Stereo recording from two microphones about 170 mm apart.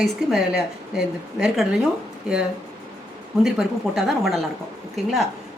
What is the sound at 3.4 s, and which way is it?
A woman's voice, centre (ahead or behind).